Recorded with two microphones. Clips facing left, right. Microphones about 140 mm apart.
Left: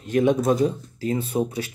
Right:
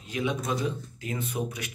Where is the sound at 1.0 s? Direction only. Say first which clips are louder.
Left 9 dB; 30° left (ahead or behind).